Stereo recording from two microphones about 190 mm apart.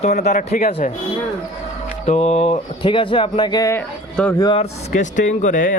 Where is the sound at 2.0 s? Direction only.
35° left (ahead or behind); by 4.4 s 10° left (ahead or behind).